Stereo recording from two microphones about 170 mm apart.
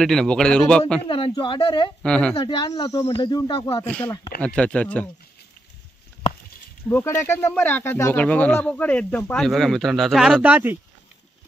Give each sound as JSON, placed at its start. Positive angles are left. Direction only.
{"t": 0.0, "sound": "a man's voice", "side_deg": 5}
{"t": 1.0, "sound": "speech", "side_deg": 30}
{"t": 2.0, "sound": "a man's voice", "side_deg": 5}
{"t": 2.3, "sound": "speech", "side_deg": 30}
{"t": 3.8, "sound": "speech", "side_deg": 10}
{"t": 6.9, "sound": "speech", "side_deg": 15}